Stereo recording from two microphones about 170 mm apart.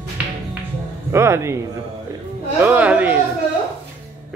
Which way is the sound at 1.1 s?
15° right (ahead or behind).